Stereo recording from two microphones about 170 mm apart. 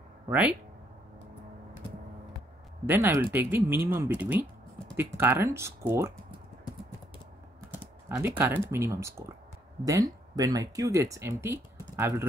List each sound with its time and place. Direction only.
0.3 s speech: 10° right (ahead or behind)
2.9 s speech: 15° right (ahead or behind)
7.7 s speech: 10° right (ahead or behind)